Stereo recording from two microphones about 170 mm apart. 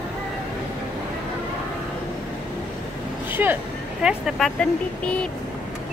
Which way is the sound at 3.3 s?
10° right (ahead or behind).